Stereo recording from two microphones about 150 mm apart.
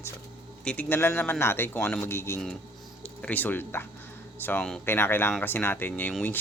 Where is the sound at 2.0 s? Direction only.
15° left (ahead or behind).